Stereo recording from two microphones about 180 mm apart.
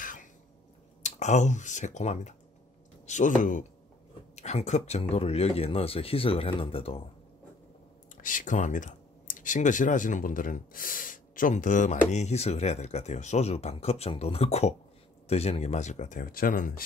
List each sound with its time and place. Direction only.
0.0 s cough: 50° left (ahead or behind)
1.0 s speech: 40° left (ahead or behind)
8.2 s speech: 50° left (ahead or behind)